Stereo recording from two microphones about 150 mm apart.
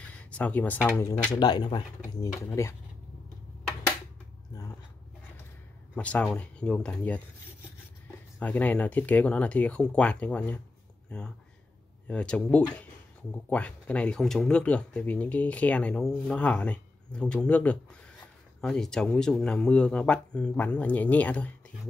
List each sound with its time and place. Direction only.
0.2 s speech: 10° left (ahead or behind)
1.4 s speech: 30° left (ahead or behind)
2.4 s speech: 20° left (ahead or behind)
5.9 s speech: 10° left (ahead or behind)
8.4 s speech: 10° left (ahead or behind)